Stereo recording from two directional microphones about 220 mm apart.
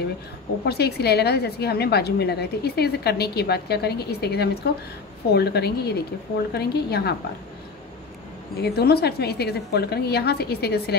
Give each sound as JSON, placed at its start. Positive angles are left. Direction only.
{"t": 0.7, "sound": "a woman's voice", "side_deg": 45}
{"t": 8.5, "sound": "a woman's voice", "side_deg": 45}